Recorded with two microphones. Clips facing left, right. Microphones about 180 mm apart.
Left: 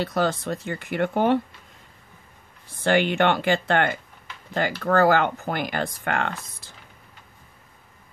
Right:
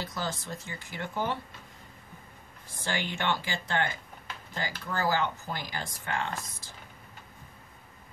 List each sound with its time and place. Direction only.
0.0 s speech: 65° left (ahead or behind)
2.8 s speech: 65° left (ahead or behind)